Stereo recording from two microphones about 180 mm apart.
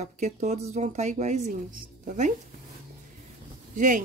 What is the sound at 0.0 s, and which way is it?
Speech, 40° right (ahead or behind).